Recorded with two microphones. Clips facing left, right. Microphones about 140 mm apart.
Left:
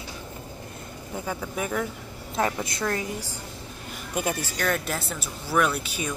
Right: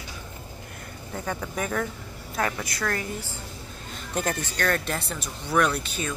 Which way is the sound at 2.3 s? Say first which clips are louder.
Left 2 dB; 25° left (ahead or behind).